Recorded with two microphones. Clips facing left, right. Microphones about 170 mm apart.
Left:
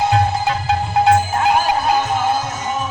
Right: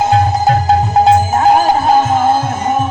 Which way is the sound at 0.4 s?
45° right (ahead or behind).